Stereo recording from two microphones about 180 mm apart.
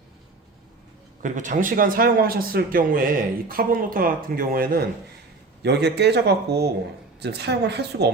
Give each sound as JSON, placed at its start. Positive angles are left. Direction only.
{"t": 1.2, "sound": "a man's voice", "side_deg": -45}
{"t": 5.6, "sound": "a man's voice", "side_deg": -65}